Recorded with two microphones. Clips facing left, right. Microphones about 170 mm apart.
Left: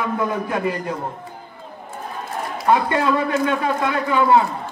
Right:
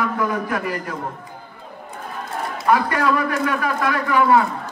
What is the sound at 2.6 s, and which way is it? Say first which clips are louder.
A man's voice: left 1 dB; 25° left (ahead or behind).